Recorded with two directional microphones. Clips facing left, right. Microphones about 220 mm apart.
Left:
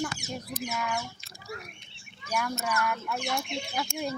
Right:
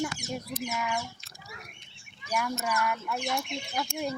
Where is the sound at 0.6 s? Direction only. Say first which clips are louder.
Left 2 dB; 10° right (ahead or behind).